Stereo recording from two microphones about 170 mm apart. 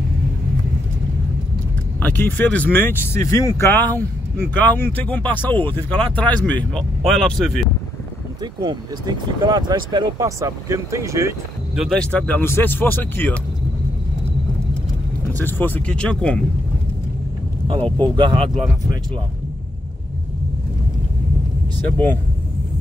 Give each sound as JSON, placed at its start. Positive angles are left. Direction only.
{"t": 2.0, "sound": "speech", "side_deg": 10}
{"t": 8.4, "sound": "speech", "side_deg": -25}
{"t": 11.7, "sound": "speech", "side_deg": 0}
{"t": 15.3, "sound": "speech", "side_deg": 10}
{"t": 18.0, "sound": "speech", "side_deg": -30}